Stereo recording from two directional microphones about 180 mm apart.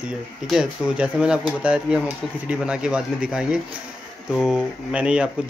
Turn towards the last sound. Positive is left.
turn(degrees=-5)  # may be behind; listen again after turning